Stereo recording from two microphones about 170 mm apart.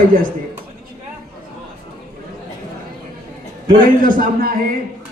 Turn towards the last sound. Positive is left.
turn(degrees=-55)  # may be behind; listen again after turning